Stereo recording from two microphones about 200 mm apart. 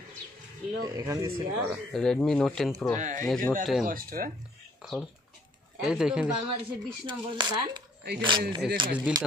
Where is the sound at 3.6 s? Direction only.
Centre (ahead or behind).